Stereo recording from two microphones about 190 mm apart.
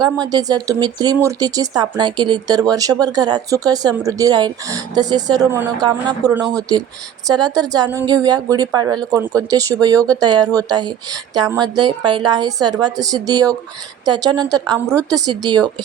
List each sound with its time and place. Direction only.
0.0 s speech: 20° right (ahead or behind)
6.3 s speech: centre (ahead or behind)
6.6 s speech: 20° right (ahead or behind)